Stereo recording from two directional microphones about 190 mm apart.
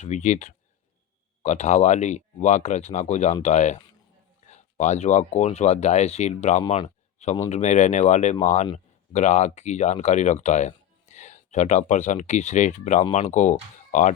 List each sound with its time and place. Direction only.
0.0 s speech: 40° left (ahead or behind)